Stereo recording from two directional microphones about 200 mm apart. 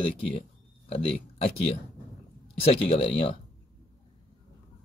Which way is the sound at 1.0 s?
30° left (ahead or behind).